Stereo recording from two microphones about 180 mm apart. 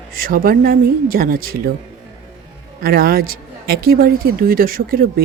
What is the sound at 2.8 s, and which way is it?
Speech, 55° right (ahead or behind).